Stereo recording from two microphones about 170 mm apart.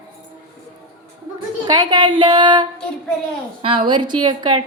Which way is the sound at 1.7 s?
25° right (ahead or behind).